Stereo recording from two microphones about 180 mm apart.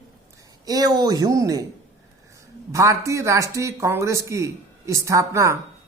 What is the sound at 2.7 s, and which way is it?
Speech, 15° right (ahead or behind).